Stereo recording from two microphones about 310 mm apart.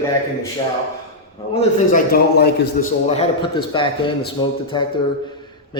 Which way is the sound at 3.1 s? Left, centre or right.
Centre.